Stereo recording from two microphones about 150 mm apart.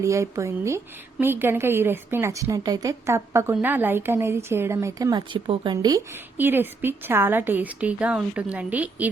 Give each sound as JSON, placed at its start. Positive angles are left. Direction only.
{"t": 0.0, "sound": "a woman's voice", "side_deg": -20}